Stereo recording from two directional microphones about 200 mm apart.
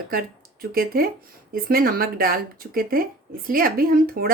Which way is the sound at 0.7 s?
45° right (ahead or behind).